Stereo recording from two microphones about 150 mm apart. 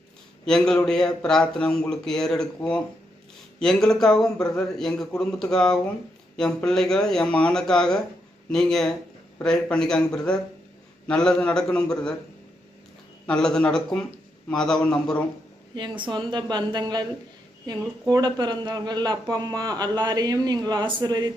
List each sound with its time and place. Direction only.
0.4 s speech: 5° left (ahead or behind)
13.2 s speech: 5° left (ahead or behind)
15.7 s a woman's voice: 30° right (ahead or behind)
18.1 s a man's voice: 30° right (ahead or behind)